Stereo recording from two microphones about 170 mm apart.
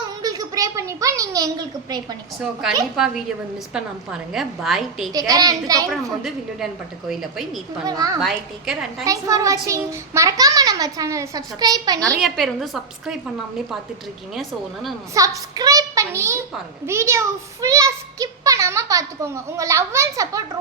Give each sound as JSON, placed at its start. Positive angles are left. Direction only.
{"t": 0.2, "sound": "a sound", "side_deg": -20}
{"t": 2.4, "sound": "a woman's voice", "side_deg": -5}
{"t": 5.1, "sound": "a child's voice", "side_deg": -20}
{"t": 5.9, "sound": "a woman's voice", "side_deg": 0}
{"t": 7.9, "sound": "a child's voice", "side_deg": -20}
{"t": 8.2, "sound": "a woman's voice", "side_deg": -5}
{"t": 9.0, "sound": "a child's voice", "side_deg": -20}
{"t": 12.2, "sound": "a woman's voice", "side_deg": 0}
{"t": 14.3, "sound": "a woman's voice", "side_deg": 0}
{"t": 15.1, "sound": "a child's voice", "side_deg": -20}